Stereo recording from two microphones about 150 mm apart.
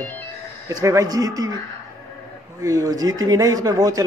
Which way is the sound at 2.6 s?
25° right (ahead or behind).